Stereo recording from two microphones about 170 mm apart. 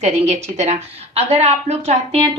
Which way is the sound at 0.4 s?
40° right (ahead or behind).